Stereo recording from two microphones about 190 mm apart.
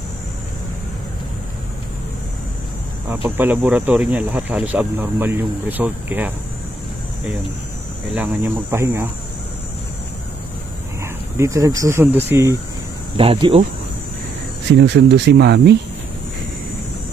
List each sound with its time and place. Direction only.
3.3 s speech: 10° right (ahead or behind)
8.1 s speech: 10° right (ahead or behind)
11.3 s speech: 15° right (ahead or behind)
13.1 s speech: 30° right (ahead or behind)
14.7 s speech: 60° right (ahead or behind)